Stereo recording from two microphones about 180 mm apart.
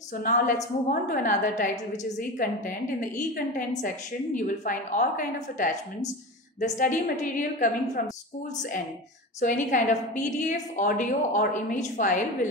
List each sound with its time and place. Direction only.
0.2 s a woman's voice: 50° left (ahead or behind)